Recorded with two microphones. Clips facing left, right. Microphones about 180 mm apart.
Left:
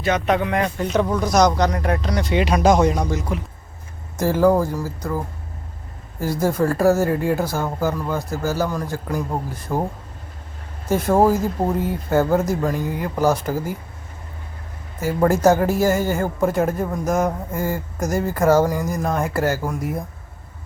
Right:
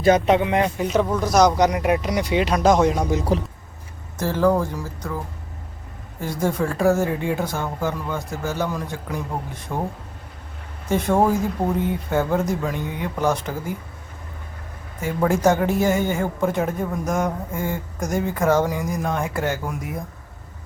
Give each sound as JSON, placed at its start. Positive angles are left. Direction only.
{"t": 0.0, "sound": "speech", "side_deg": -35}
{"t": 0.3, "sound": "speech", "side_deg": -20}
{"t": 0.8, "sound": "speech", "side_deg": -5}
{"t": 2.3, "sound": "speech", "side_deg": 0}
{"t": 3.3, "sound": "speech", "side_deg": -35}
{"t": 4.2, "sound": "speech", "side_deg": 10}
{"t": 10.8, "sound": "speech", "side_deg": 5}
{"t": 15.0, "sound": "speech", "side_deg": 5}